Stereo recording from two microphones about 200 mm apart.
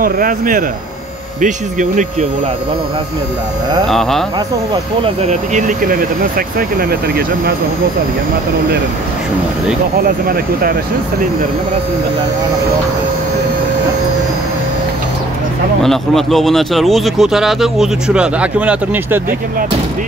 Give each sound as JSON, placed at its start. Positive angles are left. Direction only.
{"t": 0.0, "sound": "speech", "side_deg": -45}
{"t": 5.0, "sound": "speech", "side_deg": -35}
{"t": 10.0, "sound": "speech", "side_deg": -45}
{"t": 15.8, "sound": "speech", "side_deg": 0}